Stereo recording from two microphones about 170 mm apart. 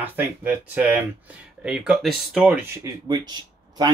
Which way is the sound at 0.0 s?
10° right (ahead or behind).